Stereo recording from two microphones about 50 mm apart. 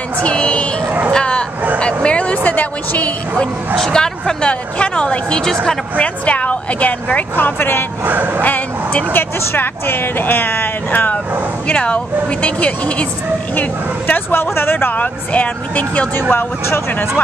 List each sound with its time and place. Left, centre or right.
0.2 s speech: left
1.1 s bow-wow: centre
2.0 s a woman's voice: left
3.7 s speech: centre
5.9 s a woman's voice: left
8.0 s speech: right
8.4 s speech: left
9.5 s speech: left
11.6 s a woman's voice: left
13.6 s speech: left
16.2 s speech: left